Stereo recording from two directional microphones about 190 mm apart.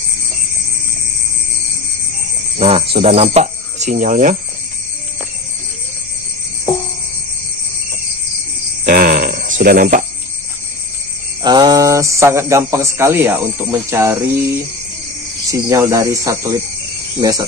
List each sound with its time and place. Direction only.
2.5 s speech: 30° right (ahead or behind)
8.8 s a sound: 50° right (ahead or behind)
11.4 s speech: 20° right (ahead or behind)
15.5 s speech: 15° right (ahead or behind)